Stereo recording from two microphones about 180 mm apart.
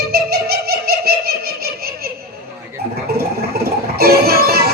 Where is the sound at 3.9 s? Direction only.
60° right (ahead or behind).